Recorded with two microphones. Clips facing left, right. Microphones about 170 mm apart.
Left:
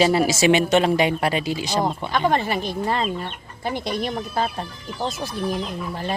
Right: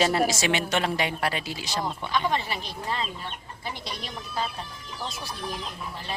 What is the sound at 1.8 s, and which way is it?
Speech, 50° left (ahead or behind).